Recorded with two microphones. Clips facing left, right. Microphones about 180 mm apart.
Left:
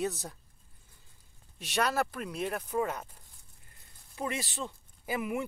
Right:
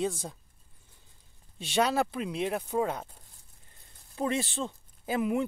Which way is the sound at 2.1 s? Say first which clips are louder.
Right 4 dB; 10° right (ahead or behind).